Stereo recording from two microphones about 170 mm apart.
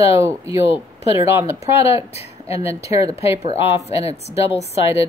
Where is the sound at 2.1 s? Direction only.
35° left (ahead or behind).